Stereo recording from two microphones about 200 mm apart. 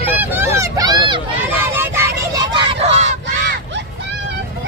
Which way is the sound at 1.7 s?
10° right (ahead or behind).